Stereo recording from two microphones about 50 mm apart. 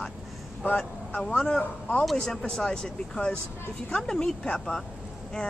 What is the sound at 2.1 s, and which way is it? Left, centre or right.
A woman's voice, centre.